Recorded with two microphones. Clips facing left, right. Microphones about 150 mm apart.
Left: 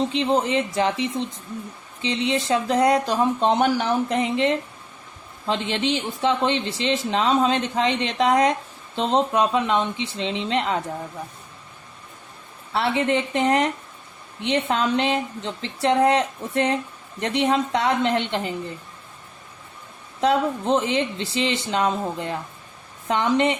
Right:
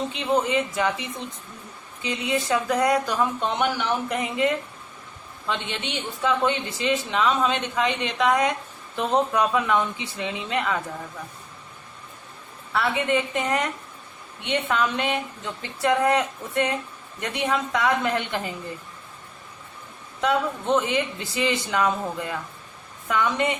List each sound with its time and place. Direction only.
0.1 s speech: 30° left (ahead or behind)
9.0 s speech: 20° left (ahead or behind)
12.7 s speech: 30° left (ahead or behind)
20.2 s speech: 30° left (ahead or behind)